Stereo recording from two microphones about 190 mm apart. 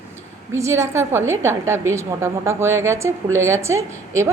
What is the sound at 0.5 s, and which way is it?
A woman's voice, 15° right (ahead or behind).